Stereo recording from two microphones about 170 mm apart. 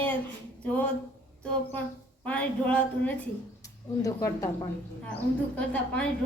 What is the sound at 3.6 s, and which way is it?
Speech, 20° left (ahead or behind).